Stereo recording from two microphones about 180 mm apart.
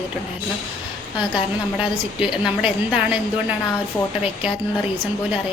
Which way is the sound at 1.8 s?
30° left (ahead or behind).